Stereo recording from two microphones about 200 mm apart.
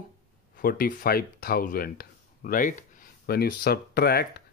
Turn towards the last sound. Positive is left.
turn(degrees=50)  # may be behind; listen again after turning